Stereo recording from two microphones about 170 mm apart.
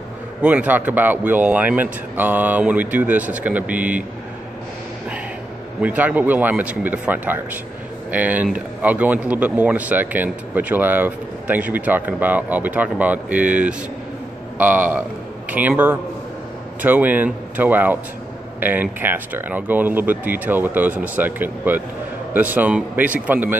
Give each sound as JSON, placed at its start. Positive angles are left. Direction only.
{"t": 0.4, "sound": "speech", "side_deg": -10}
{"t": 5.8, "sound": "speech", "side_deg": -10}